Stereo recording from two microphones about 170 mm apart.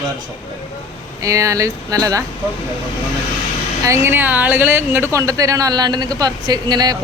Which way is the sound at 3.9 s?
15° right (ahead or behind).